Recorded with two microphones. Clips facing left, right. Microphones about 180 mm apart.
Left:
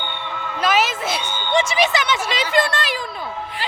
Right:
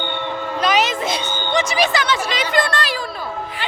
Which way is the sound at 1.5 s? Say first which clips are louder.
Even; 25° left (ahead or behind).